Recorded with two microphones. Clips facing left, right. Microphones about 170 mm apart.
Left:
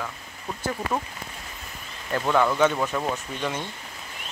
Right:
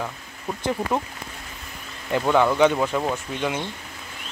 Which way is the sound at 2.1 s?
10° right (ahead or behind).